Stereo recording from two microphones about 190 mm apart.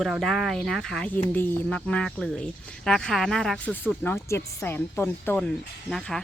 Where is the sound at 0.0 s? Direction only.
Centre (ahead or behind).